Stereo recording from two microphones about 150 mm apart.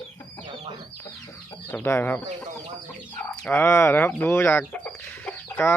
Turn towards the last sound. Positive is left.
turn(degrees=15)  # may be behind; listen again after turning